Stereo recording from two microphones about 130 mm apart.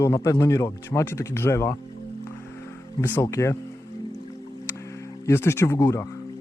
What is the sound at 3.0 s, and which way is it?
Speech, 15° left (ahead or behind).